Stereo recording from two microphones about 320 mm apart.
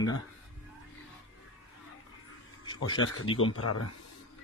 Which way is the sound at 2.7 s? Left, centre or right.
Left.